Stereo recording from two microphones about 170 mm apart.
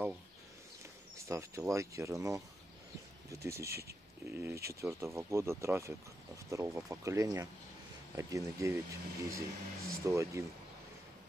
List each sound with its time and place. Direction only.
1.1 s speech: 20° right (ahead or behind)
3.4 s speech: 15° right (ahead or behind)